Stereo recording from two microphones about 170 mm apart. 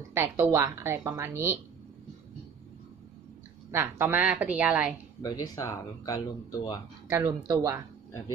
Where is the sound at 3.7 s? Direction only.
15° right (ahead or behind).